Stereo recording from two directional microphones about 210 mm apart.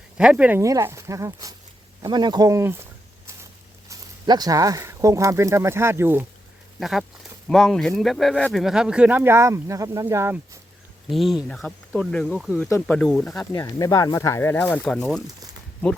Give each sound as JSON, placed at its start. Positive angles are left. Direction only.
{"t": 0.2, "sound": "speech", "side_deg": -5}
{"t": 3.8, "sound": "speech", "side_deg": -20}
{"t": 11.1, "sound": "speech", "side_deg": 0}
{"t": 12.6, "sound": "speech", "side_deg": 10}
{"t": 13.5, "sound": "speech", "side_deg": 15}